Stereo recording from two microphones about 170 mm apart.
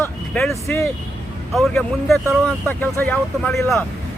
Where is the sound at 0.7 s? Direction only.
10° left (ahead or behind).